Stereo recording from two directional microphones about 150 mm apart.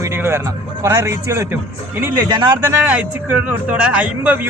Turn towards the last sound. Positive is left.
turn(degrees=-10)  # may be behind; listen again after turning